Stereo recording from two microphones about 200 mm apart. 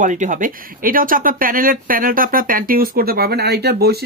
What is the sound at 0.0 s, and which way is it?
Speech, 40° right (ahead or behind).